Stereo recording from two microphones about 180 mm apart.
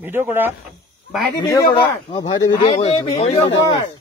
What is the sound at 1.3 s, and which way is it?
Speech, 15° left (ahead or behind).